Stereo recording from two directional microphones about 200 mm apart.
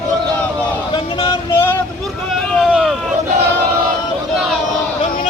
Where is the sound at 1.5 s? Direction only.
10° left (ahead or behind).